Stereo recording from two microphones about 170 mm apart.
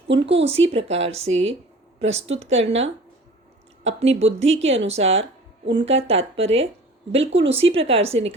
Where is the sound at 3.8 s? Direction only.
40° right (ahead or behind).